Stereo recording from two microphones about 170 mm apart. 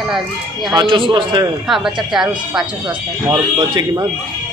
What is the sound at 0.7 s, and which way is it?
Speech, 30° right (ahead or behind).